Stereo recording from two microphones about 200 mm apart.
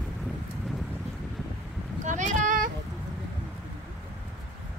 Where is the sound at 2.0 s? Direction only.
40° right (ahead or behind).